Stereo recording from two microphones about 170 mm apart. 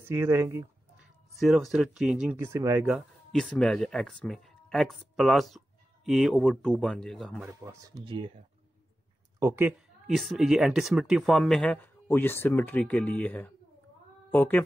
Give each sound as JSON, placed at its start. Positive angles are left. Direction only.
{"t": 0.0, "sound": "speech", "side_deg": -15}
{"t": 1.4, "sound": "speech", "side_deg": 0}
{"t": 2.3, "sound": "speech", "side_deg": -15}
{"t": 3.3, "sound": "speech", "side_deg": 5}
{"t": 7.4, "sound": "speech", "side_deg": -20}
{"t": 9.4, "sound": "speech", "side_deg": -10}
{"t": 10.1, "sound": "speech", "side_deg": 0}